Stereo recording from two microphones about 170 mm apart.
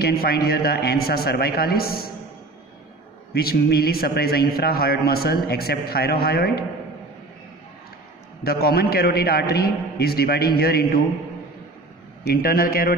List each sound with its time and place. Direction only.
0.0 s a man's voice: 65° left (ahead or behind)
3.3 s a man's voice: 65° left (ahead or behind)
8.5 s a man's voice: 65° left (ahead or behind)
12.3 s a man's voice: 60° left (ahead or behind)